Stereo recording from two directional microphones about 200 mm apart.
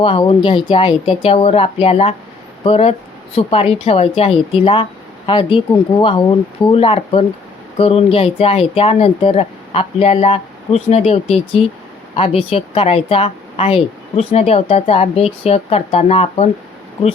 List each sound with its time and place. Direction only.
0.0 s speech: 25° left (ahead or behind)